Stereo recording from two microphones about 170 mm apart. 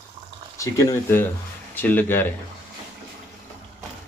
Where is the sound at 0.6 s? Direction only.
15° left (ahead or behind).